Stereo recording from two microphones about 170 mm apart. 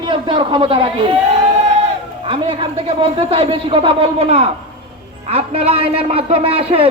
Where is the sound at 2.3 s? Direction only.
30° right (ahead or behind).